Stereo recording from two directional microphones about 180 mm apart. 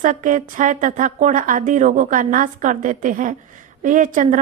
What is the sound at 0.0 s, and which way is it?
A woman's voice, 45° right (ahead or behind).